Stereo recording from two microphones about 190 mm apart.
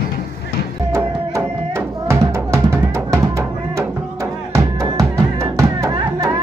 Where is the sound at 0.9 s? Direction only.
15° right (ahead or behind).